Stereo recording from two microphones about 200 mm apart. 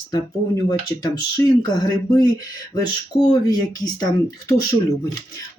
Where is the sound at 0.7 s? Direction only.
20° left (ahead or behind).